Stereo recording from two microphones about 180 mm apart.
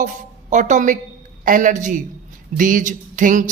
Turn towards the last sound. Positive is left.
turn(degrees=-45)  # may be behind; listen again after turning